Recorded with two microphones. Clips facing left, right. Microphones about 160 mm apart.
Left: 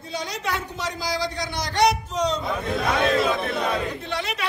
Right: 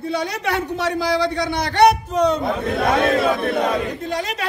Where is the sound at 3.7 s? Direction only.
40° right (ahead or behind).